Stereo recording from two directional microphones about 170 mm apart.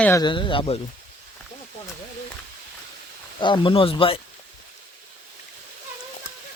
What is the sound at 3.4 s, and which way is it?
Speech, 30° left (ahead or behind).